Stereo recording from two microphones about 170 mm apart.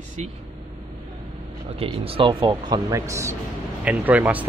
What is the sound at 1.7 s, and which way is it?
A man's voice, 35° right (ahead or behind).